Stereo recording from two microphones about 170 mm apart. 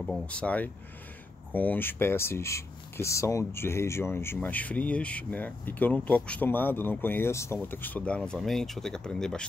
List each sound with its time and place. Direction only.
0.0 s speech: 5° left (ahead or behind)